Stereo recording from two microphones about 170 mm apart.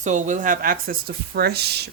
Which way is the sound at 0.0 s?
45° right (ahead or behind).